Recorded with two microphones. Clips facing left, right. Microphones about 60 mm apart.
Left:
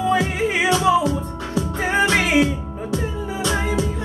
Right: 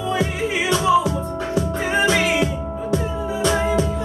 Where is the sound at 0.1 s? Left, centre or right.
Left.